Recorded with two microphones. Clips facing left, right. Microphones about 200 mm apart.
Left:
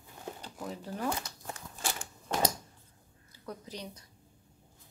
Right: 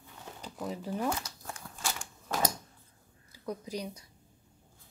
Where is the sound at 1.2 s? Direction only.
55° left (ahead or behind).